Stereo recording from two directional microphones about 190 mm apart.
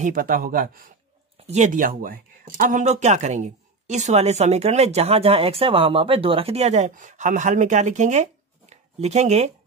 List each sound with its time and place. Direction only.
0.0 s speech: 45° right (ahead or behind)